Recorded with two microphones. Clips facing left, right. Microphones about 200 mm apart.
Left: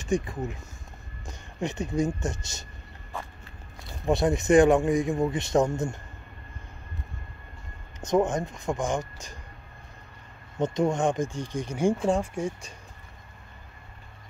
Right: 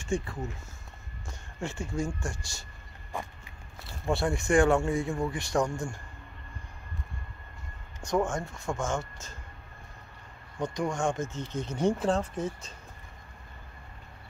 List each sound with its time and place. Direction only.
0.0 s speech: 15° left (ahead or behind)
3.1 s walk: 15° right (ahead or behind)
4.0 s speech: 20° left (ahead or behind)
8.0 s speech: 20° left (ahead or behind)
10.6 s speech: 25° left (ahead or behind)